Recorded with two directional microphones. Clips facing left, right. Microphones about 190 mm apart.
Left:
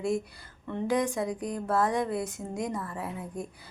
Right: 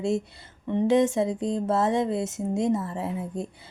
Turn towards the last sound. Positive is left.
turn(degrees=-25)  # may be behind; listen again after turning